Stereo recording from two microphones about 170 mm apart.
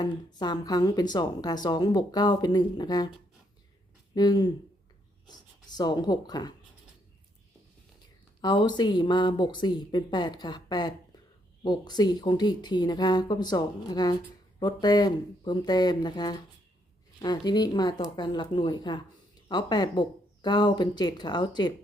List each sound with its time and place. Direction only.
0.0 s speech: 25° left (ahead or behind)
4.1 s speech: 25° left (ahead or behind)
8.4 s speech: 25° left (ahead or behind)